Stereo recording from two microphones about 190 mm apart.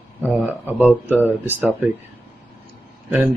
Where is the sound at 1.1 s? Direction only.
10° right (ahead or behind).